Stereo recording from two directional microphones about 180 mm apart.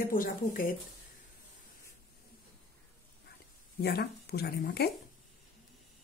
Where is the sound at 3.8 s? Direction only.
60° left (ahead or behind).